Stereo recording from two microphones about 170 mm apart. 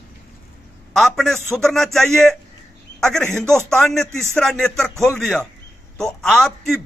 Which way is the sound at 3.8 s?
5° left (ahead or behind).